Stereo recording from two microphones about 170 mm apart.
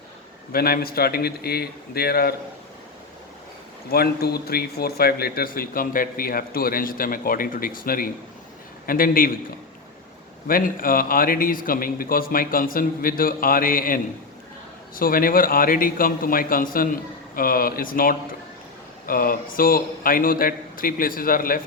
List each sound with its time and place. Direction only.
0.5 s speech: 60° left (ahead or behind)
3.9 s speech: 65° left (ahead or behind)
10.4 s speech: 55° left (ahead or behind)